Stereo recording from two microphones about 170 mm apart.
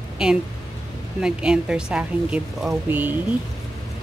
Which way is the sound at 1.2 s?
5° right (ahead or behind).